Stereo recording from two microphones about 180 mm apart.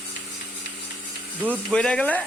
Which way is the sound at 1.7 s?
5° left (ahead or behind).